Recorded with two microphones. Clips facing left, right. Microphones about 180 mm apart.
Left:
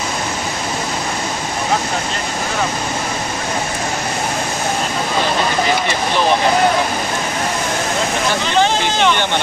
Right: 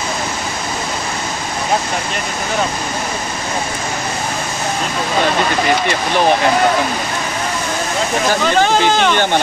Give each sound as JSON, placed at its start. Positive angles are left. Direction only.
{"t": 8.5, "sound": "speech", "side_deg": -45}